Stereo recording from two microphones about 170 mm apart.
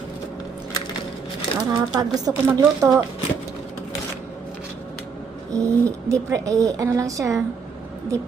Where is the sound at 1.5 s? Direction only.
20° right (ahead or behind).